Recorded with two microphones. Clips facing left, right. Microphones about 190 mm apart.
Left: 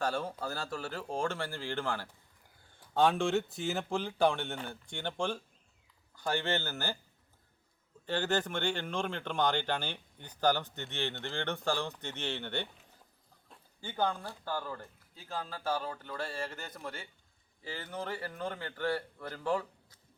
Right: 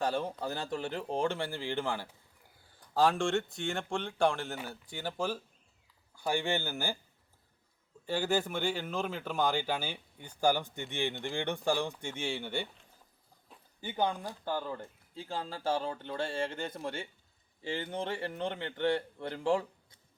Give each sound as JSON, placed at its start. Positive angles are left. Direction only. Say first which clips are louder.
{"t": 0.0, "sound": "speech", "louder": "right 2 dB", "side_deg": -15}
{"t": 2.8, "sound": "speech", "louder": "even", "side_deg": 0}
{"t": 8.0, "sound": "speech", "louder": "right 1 dB", "side_deg": -10}
{"t": 13.5, "sound": "a sound", "louder": "right 1 dB", "side_deg": 0}
{"t": 13.8, "sound": "speech", "louder": "right 1 dB", "side_deg": -15}